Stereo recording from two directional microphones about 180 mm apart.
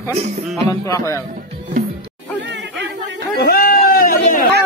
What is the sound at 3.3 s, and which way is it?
Chatter, 60° left (ahead or behind).